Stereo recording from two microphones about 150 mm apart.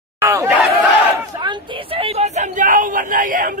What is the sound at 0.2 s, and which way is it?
Chatter, 15° right (ahead or behind).